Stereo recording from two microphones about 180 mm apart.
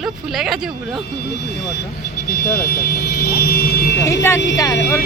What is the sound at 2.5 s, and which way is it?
Vehicle, 55° left (ahead or behind).